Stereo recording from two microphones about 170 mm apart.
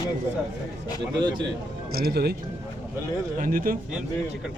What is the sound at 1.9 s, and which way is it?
Speech, 65° right (ahead or behind).